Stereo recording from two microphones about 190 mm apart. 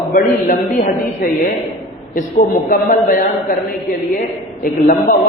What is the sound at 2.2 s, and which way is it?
A man's voice, 40° left (ahead or behind).